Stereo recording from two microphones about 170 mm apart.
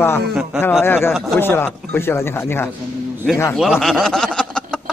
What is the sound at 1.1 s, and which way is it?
Speech, centre (ahead or behind).